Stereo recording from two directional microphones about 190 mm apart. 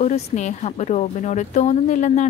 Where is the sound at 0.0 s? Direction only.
35° left (ahead or behind).